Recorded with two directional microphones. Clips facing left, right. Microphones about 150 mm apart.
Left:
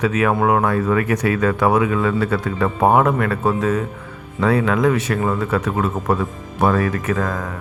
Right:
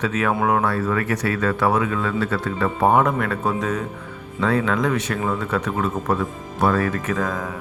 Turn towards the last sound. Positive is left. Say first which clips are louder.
# left 2 dB
turn(degrees=5)  # may be behind; listen again after turning